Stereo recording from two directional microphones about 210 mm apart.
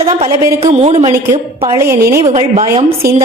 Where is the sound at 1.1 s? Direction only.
20° right (ahead or behind).